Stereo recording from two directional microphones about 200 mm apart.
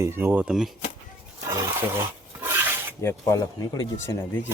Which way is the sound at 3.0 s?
15° left (ahead or behind).